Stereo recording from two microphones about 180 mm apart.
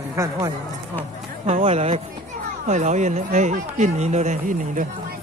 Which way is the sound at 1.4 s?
35° right (ahead or behind).